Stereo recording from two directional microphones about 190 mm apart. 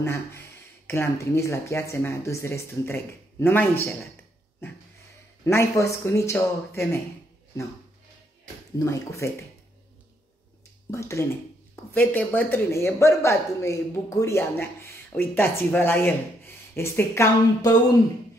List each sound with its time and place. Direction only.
0.0 s speech: 15° left (ahead or behind)
5.4 s speech: 15° left (ahead or behind)
8.7 s speech: 15° left (ahead or behind)
10.9 s speech: 15° left (ahead or behind)